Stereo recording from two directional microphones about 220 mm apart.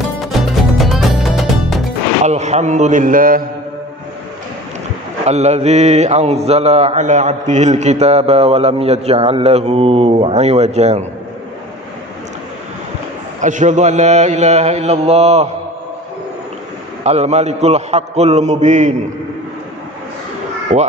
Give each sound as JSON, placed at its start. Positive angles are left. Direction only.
{"t": 0.3, "sound": "music", "side_deg": 0}
{"t": 2.2, "sound": "mantra", "side_deg": -30}
{"t": 5.2, "sound": "mantra", "side_deg": -30}
{"t": 13.4, "sound": "mantra", "side_deg": -35}
{"t": 17.0, "sound": "mantra", "side_deg": -30}
{"t": 20.7, "sound": "mantra", "side_deg": -30}